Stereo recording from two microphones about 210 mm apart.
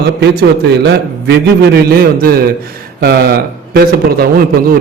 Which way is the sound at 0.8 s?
50° right (ahead or behind).